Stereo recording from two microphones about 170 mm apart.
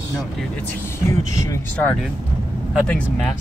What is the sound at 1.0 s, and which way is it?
Speech, 10° left (ahead or behind).